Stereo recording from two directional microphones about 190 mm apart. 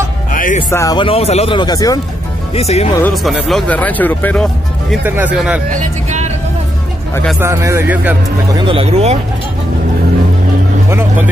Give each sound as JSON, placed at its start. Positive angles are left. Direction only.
{"t": 0.3, "sound": "music", "side_deg": 45}
{"t": 0.6, "sound": "speech", "side_deg": 20}
{"t": 2.5, "sound": "speech", "side_deg": 35}
{"t": 3.3, "sound": "speech", "side_deg": 0}
{"t": 5.0, "sound": "speech", "side_deg": -10}
{"t": 5.7, "sound": "speech", "side_deg": -40}
{"t": 7.3, "sound": "speech", "side_deg": -15}
{"t": 8.5, "sound": "speech", "side_deg": -30}
{"t": 10.9, "sound": "vehicle", "side_deg": -10}